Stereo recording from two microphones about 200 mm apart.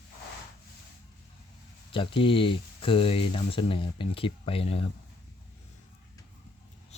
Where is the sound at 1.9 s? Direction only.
25° left (ahead or behind).